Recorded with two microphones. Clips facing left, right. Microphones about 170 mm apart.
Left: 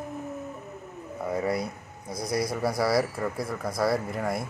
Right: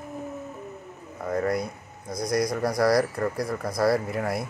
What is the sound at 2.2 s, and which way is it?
Speech, 5° left (ahead or behind).